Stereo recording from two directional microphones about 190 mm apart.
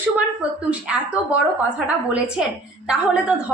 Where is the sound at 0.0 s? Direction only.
5° right (ahead or behind).